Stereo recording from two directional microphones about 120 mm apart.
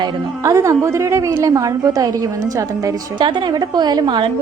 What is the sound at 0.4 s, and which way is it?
A woman's voice, 25° right (ahead or behind).